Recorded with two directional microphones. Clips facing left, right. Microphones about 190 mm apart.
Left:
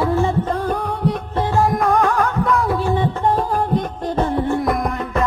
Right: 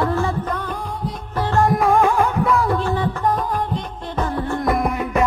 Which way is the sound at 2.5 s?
Centre (ahead or behind).